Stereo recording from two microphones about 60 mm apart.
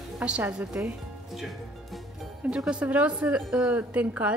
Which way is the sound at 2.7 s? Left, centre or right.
Right.